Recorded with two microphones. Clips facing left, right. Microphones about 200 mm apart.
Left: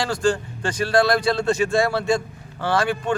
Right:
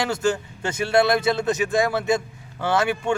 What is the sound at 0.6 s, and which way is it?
A man's voice, 25° right (ahead or behind).